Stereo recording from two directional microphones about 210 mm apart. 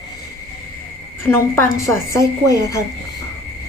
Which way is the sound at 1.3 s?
10° left (ahead or behind).